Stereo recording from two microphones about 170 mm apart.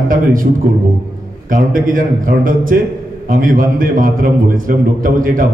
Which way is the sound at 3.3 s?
55° right (ahead or behind).